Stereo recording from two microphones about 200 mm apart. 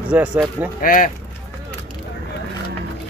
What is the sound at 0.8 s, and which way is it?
Speech, 45° left (ahead or behind).